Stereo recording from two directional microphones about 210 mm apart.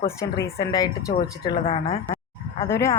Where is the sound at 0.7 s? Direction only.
15° left (ahead or behind).